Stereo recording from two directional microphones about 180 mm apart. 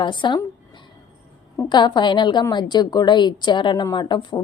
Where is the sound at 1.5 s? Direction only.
25° left (ahead or behind).